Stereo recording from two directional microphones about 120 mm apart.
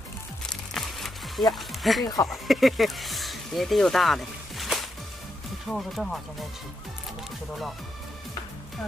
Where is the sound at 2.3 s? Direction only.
Centre (ahead or behind).